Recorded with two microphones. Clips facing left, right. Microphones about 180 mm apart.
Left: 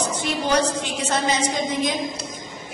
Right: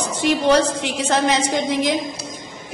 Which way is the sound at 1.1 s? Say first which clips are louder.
Right 4 dB; 70° right (ahead or behind).